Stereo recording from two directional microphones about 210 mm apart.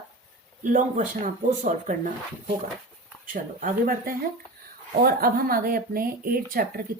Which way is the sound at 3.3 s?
40° right (ahead or behind).